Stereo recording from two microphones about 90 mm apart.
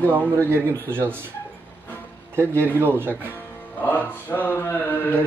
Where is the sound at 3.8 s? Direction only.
20° left (ahead or behind).